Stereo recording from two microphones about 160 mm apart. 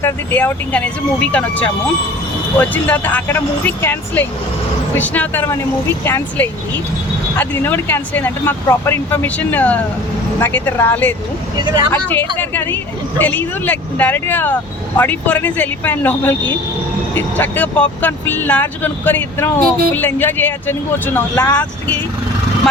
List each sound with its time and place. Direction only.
0.0 s speech: 15° left (ahead or behind)
11.6 s speech: 25° right (ahead or behind)
11.9 s speech: 15° left (ahead or behind)